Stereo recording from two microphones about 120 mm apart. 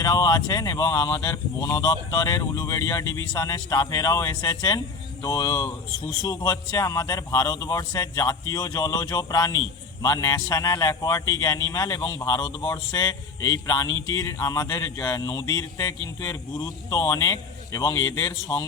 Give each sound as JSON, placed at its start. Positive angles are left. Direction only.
{"t": 0.0, "sound": "a man's voice", "side_deg": 30}
{"t": 13.7, "sound": "a man's voice", "side_deg": 30}